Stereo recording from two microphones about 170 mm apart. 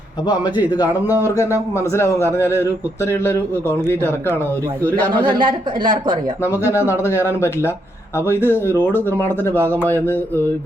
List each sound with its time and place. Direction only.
0.8 s a man's voice: 10° right (ahead or behind)
1.4 s a man's voice: 15° left (ahead or behind)
5.4 s a woman's voice: 30° right (ahead or behind)
6.4 s a man's voice: 15° left (ahead or behind)
8.3 s a man's voice: 15° left (ahead or behind)